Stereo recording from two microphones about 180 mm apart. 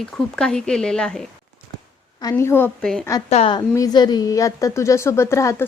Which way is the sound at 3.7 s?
20° left (ahead or behind).